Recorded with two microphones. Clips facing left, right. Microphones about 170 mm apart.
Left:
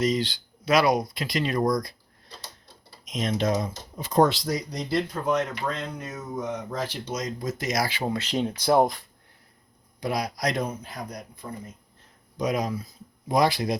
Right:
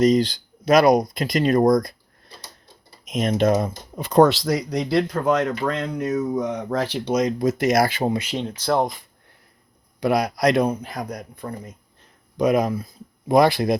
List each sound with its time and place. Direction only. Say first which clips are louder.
0.0 s speech: right 8 dB; 40° right (ahead or behind)
3.0 s speech: right 6 dB; 55° right (ahead or behind)
8.4 s speech: left 4 dB; 10° left (ahead or behind)
10.0 s a man's voice: right 8 dB; 60° right (ahead or behind)